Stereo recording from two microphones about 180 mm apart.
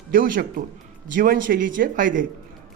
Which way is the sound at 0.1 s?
50° right (ahead or behind).